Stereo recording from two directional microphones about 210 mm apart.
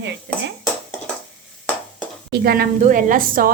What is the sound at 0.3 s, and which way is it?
Dishes, 5° left (ahead or behind).